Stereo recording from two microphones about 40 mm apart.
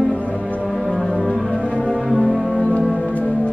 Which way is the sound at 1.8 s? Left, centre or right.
Centre.